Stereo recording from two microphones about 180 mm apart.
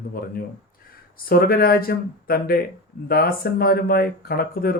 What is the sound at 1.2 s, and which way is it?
Speech, 55° left (ahead or behind).